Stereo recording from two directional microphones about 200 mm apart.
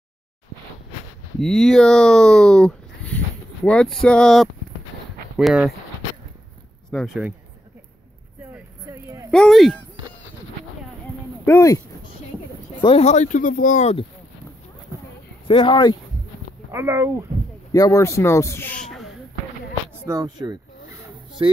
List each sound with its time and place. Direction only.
1.4 s speech: 5° left (ahead or behind)
6.9 s speech: 5° right (ahead or behind)
8.5 s a sound: 10° right (ahead or behind)
9.3 s speech: centre (ahead or behind)
11.4 s speech: 15° left (ahead or behind)
12.8 s speech: 30° left (ahead or behind)
15.4 s speech: 25° left (ahead or behind)
16.7 s speech: 10° right (ahead or behind)
17.7 s speech: 15° left (ahead or behind)
20.1 s a sound: 20° right (ahead or behind)